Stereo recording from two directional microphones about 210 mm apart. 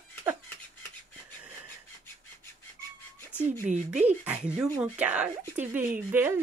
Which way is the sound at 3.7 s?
35° right (ahead or behind).